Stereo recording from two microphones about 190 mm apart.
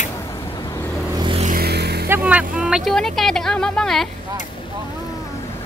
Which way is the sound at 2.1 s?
5° right (ahead or behind).